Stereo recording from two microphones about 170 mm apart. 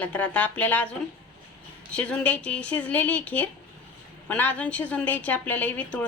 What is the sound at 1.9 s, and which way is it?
A woman's voice, 5° left (ahead or behind).